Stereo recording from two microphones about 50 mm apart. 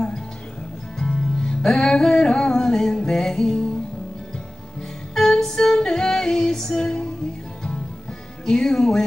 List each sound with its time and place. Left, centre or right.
0.9 s music: centre
5.1 s music: centre
8.5 s speech: centre